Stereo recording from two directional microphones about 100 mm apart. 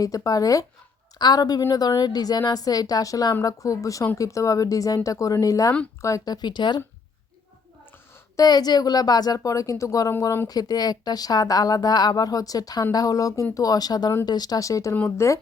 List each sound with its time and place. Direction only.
0.0 s speech: 35° left (ahead or behind)
8.4 s speech: 40° left (ahead or behind); by 15.4 s 25° left (ahead or behind)